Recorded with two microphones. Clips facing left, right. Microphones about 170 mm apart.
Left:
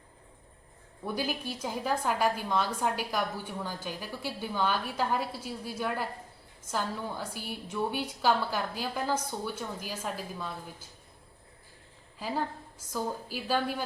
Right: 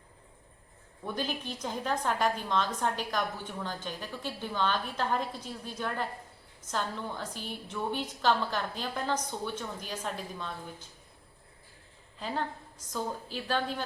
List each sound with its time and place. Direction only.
1.0 s a woman's voice: 10° left (ahead or behind)
12.9 s a woman's voice: 10° left (ahead or behind)